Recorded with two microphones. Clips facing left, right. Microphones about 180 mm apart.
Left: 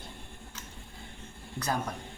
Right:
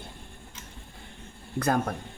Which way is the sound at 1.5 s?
55° right (ahead or behind).